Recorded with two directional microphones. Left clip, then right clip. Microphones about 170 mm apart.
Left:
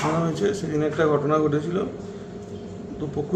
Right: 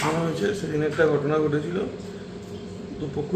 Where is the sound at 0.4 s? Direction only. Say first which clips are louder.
Left 2 dB; 20° left (ahead or behind).